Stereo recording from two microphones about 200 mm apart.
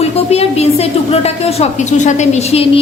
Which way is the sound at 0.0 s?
30° left (ahead or behind).